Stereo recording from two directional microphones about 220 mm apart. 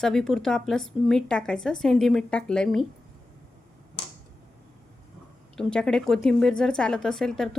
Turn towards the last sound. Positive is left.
turn(degrees=0)  # may be behind; listen again after turning